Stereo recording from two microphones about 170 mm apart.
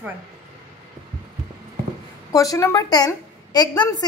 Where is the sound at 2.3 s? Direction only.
20° left (ahead or behind).